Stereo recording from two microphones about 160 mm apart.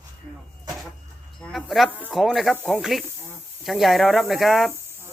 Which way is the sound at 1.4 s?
Centre (ahead or behind).